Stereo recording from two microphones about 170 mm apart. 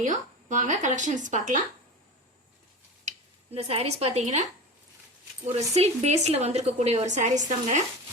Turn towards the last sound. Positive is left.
turn(degrees=-45)  # may be behind; listen again after turning